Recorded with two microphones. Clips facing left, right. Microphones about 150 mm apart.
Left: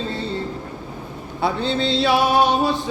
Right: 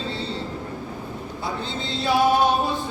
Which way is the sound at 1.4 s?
70° left (ahead or behind).